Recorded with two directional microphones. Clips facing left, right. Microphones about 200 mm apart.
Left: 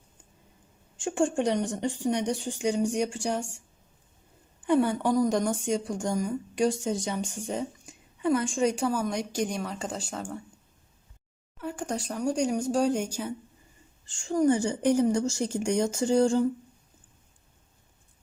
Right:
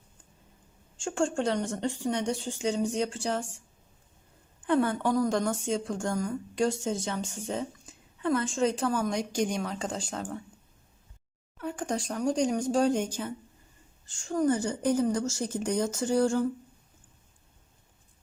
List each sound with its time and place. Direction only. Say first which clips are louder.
0.9 s a woman's voice: left 2 dB; 15° left (ahead or behind)
4.6 s a woman's voice: left 2 dB; 15° left (ahead or behind)
11.5 s a sound: even; 5° left (ahead or behind)
11.9 s a woman's voice: even; 5° left (ahead or behind)